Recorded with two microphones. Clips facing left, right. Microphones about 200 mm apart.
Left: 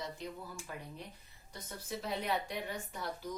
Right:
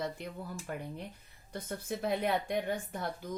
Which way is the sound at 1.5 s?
55° right (ahead or behind).